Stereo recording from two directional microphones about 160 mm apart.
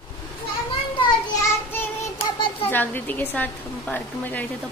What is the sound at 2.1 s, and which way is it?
Child singing, 35° left (ahead or behind).